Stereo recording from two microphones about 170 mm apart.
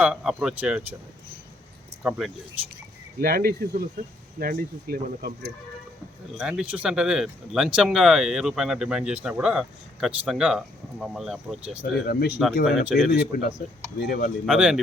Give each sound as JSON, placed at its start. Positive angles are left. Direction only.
{"t": 0.0, "sound": "speech", "side_deg": -5}
{"t": 2.0, "sound": "speech", "side_deg": 0}
{"t": 3.2, "sound": "speech", "side_deg": -65}
{"t": 6.3, "sound": "speech", "side_deg": -5}
{"t": 11.8, "sound": "speech", "side_deg": 65}
{"t": 12.6, "sound": "speech", "side_deg": -5}
{"t": 13.1, "sound": "speech", "side_deg": 75}
{"t": 14.0, "sound": "speech", "side_deg": 55}
{"t": 14.4, "sound": "speech", "side_deg": -5}